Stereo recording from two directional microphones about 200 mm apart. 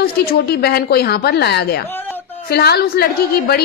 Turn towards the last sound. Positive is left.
turn(degrees=50)  # may be behind; listen again after turning